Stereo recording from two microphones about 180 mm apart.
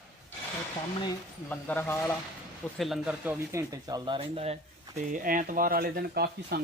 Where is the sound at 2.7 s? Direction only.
Centre (ahead or behind); by 4.5 s 35° right (ahead or behind).